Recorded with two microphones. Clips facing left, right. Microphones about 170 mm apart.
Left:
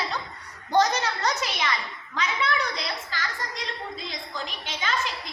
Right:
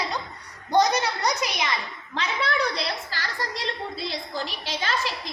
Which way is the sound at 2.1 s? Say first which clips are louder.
Right 1 dB; 35° right (ahead or behind).